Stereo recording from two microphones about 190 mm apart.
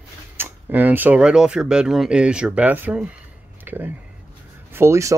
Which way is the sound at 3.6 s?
10° right (ahead or behind).